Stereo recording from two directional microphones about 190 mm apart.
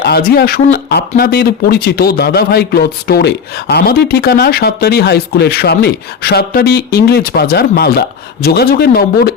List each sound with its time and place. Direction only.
0.0 s speech: 60° left (ahead or behind)